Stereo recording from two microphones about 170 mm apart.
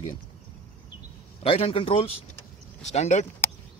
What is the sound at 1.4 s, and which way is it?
Speech, 35° left (ahead or behind).